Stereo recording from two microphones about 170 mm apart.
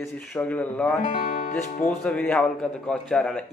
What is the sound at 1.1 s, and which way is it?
Music, 45° left (ahead or behind).